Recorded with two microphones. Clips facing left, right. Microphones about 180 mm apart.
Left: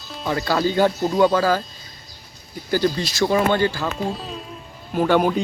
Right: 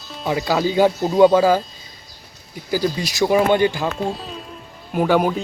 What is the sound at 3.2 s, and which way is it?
Speech, 15° right (ahead or behind).